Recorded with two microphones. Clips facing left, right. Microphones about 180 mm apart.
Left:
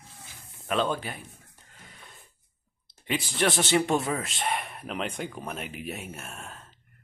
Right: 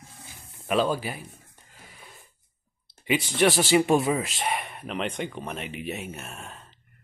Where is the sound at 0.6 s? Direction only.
5° right (ahead or behind).